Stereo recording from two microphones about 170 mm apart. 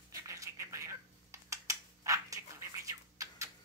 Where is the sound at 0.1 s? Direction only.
20° right (ahead or behind).